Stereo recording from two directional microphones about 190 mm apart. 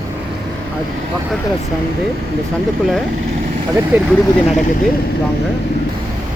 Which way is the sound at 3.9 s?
10° right (ahead or behind).